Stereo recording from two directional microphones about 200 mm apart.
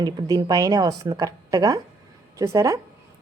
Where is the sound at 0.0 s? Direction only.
20° right (ahead or behind).